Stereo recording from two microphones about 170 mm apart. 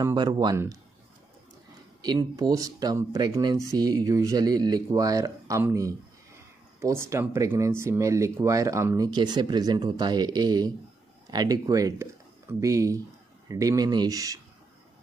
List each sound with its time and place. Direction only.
0.0 s speech: 25° right (ahead or behind)
2.0 s speech: 25° right (ahead or behind)